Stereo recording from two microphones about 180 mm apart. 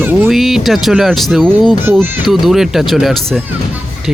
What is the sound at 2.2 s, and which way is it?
Speech, centre (ahead or behind).